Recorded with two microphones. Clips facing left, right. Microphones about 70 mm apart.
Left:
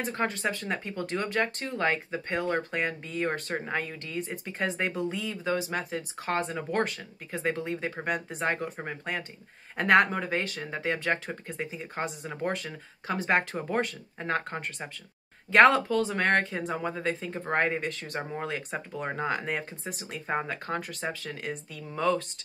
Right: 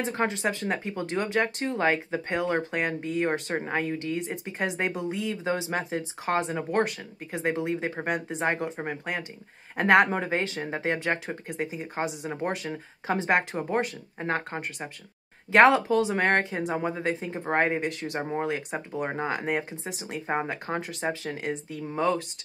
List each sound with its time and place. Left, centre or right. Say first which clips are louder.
0.1 s speech: right 2 dB; right
11.2 s speech: right 3 dB; centre
12.6 s speech: right 5 dB; right
13.3 s speech: right 1 dB; centre